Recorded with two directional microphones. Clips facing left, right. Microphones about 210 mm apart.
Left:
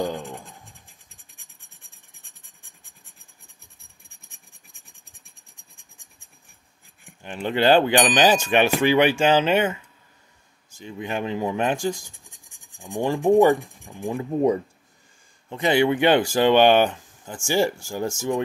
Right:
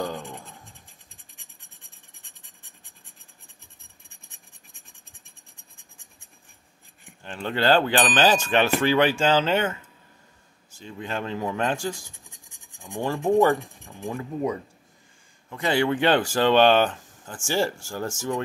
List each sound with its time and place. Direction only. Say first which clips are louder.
0.0 s writing: left 3 dB; 10° left (ahead or behind)
7.2 s speech: left 3 dB; 15° left (ahead or behind)
10.8 s speech: left 3 dB; 15° left (ahead or behind)
15.5 s speech: left 4 dB; 15° left (ahead or behind)